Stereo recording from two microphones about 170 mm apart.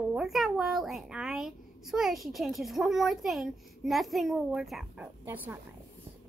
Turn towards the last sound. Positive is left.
turn(degrees=-10)  # may be behind; listen again after turning